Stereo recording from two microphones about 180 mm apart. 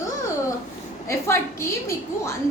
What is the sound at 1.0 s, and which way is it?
Speech, 15° left (ahead or behind).